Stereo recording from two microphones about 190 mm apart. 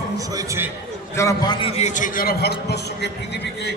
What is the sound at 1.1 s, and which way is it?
Speech, 15° left (ahead or behind).